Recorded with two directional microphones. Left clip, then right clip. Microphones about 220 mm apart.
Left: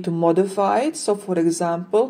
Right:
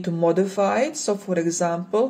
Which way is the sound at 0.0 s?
20° left (ahead or behind).